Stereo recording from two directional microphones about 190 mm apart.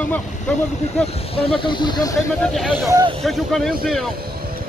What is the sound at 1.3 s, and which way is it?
Speech, 30° left (ahead or behind).